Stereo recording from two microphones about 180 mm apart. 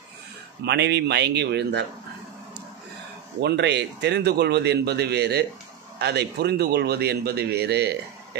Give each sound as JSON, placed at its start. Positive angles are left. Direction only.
{"t": 0.7, "sound": "a man's voice", "side_deg": -70}
{"t": 3.3, "sound": "a man's voice", "side_deg": -70}